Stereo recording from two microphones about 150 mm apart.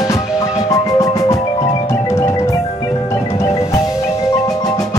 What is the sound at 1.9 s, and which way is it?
Marimba, 20° left (ahead or behind).